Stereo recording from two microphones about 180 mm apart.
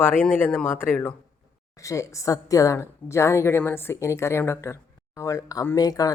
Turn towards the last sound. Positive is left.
turn(degrees=20)  # may be behind; listen again after turning